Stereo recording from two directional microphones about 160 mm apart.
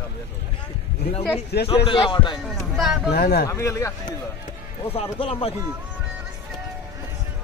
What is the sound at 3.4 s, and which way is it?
Speech, 20° left (ahead or behind).